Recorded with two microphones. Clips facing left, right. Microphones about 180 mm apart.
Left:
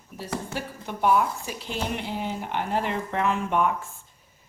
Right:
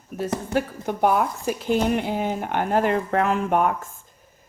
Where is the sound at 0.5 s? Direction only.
50° right (ahead or behind).